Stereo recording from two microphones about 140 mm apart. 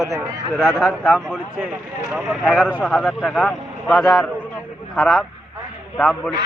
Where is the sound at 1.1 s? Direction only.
5° right (ahead or behind).